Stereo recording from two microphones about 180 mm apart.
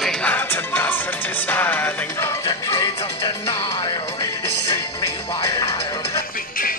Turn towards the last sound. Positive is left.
turn(degrees=20)  # may be behind; listen again after turning